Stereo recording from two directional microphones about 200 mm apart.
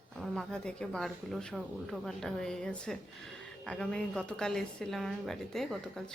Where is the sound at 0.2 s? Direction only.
5° left (ahead or behind).